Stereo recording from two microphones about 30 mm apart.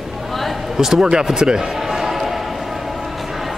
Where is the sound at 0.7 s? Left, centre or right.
Centre.